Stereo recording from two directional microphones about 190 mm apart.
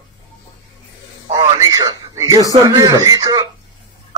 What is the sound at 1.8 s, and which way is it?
A man's voice, 20° right (ahead or behind).